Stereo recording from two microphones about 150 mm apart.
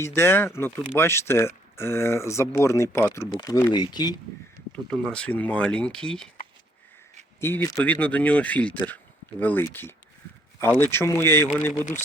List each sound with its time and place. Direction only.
0.0 s speech: 15° left (ahead or behind)
4.7 s speech: 5° left (ahead or behind)
7.3 s speech: 15° left (ahead or behind)